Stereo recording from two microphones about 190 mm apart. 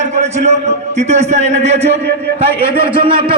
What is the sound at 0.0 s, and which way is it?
A man's voice, 35° right (ahead or behind).